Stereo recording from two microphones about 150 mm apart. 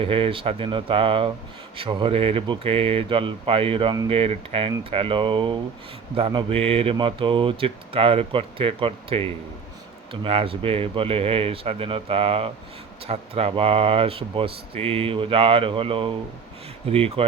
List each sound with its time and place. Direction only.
0.0 s speech: 35° right (ahead or behind)